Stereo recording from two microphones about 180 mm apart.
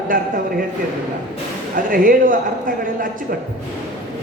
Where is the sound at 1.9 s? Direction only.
50° right (ahead or behind).